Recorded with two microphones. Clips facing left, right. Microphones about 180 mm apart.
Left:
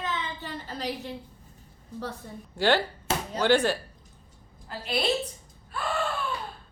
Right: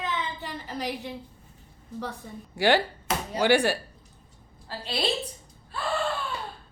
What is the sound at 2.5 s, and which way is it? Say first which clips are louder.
Speech: right 1 dB; 15° right (ahead or behind).